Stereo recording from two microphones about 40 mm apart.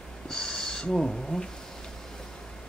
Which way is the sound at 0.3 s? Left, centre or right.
Centre.